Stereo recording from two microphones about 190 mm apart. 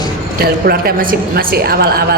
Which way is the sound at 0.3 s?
55° right (ahead or behind).